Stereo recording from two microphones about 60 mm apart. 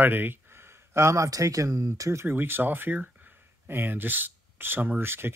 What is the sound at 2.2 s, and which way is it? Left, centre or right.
Speech, right.